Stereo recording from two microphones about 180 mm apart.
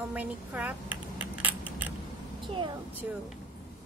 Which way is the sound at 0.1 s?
10° right (ahead or behind).